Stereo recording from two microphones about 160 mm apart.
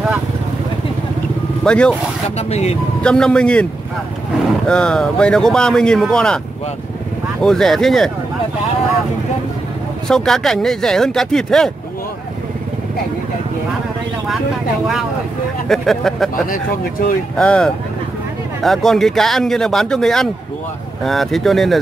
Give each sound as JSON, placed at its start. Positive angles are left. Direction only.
{"t": 1.6, "sound": "speech", "side_deg": 5}
{"t": 2.3, "sound": "speech", "side_deg": 40}
{"t": 3.0, "sound": "speech", "side_deg": 5}
{"t": 4.6, "sound": "speech", "side_deg": 5}
{"t": 7.4, "sound": "speech", "side_deg": 0}
{"t": 10.0, "sound": "speech", "side_deg": 5}
{"t": 15.7, "sound": "speech", "side_deg": 0}
{"t": 17.4, "sound": "speech", "side_deg": 5}